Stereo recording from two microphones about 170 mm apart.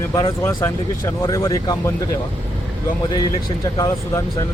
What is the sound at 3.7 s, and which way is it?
Speech, 20° left (ahead or behind).